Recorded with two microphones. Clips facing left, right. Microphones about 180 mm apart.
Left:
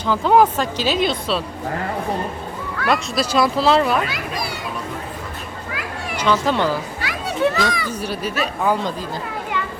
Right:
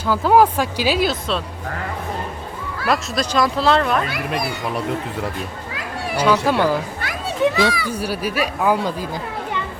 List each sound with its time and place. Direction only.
0.0 s speech: 5° right (ahead or behind)
2.8 s speech: centre (ahead or behind)
4.1 s a child's voice: 55° right (ahead or behind)
6.1 s speech: 10° right (ahead or behind)
7.0 s a child's voice: 55° right (ahead or behind)
7.4 s speech: 10° right (ahead or behind)